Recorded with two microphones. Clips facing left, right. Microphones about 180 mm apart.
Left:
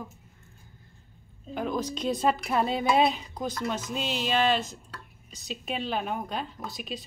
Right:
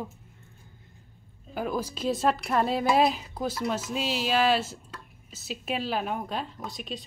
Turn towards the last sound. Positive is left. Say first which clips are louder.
# even
turn(degrees=0)  # may be behind; listen again after turning